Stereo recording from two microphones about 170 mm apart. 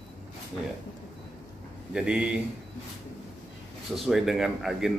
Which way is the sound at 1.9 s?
5° right (ahead or behind).